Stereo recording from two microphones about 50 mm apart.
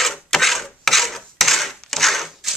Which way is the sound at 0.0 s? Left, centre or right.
Centre.